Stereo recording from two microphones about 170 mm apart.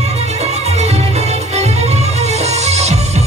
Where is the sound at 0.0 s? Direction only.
40° right (ahead or behind).